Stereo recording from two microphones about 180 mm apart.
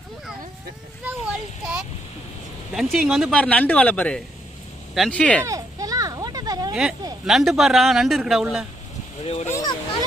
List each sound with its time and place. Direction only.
1.0 s a sound: 5° right (ahead or behind)
2.7 s speech: centre (ahead or behind)
5.5 s children playing: 20° right (ahead or behind)
7.3 s speech: centre (ahead or behind)
9.2 s speech: 35° left (ahead or behind)
9.5 s speech: 20° left (ahead or behind)